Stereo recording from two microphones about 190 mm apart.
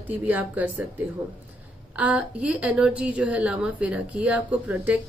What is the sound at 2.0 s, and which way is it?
A woman's voice, 5° right (ahead or behind).